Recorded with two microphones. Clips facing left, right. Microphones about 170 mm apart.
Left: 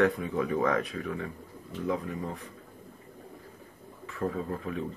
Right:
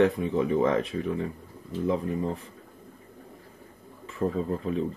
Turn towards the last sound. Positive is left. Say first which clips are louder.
# right 5 dB
turn(degrees=-30)  # may be behind; listen again after turning